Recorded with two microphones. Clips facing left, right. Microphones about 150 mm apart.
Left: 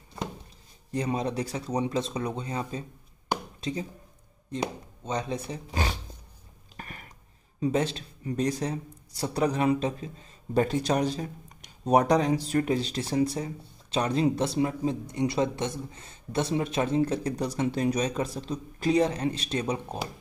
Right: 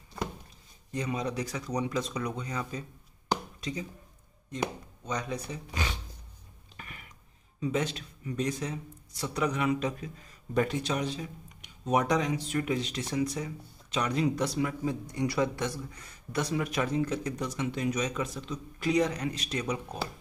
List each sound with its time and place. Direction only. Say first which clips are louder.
0.9 s speech: left 4 dB; 35° left (ahead or behind)
5.0 s speech: left 3 dB; 25° left (ahead or behind)
6.8 s a sound: left 5 dB; 40° left (ahead or behind)
7.6 s speech: left 4 dB; 35° left (ahead or behind)